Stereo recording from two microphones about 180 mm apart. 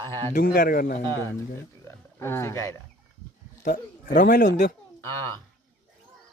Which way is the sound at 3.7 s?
45° left (ahead or behind).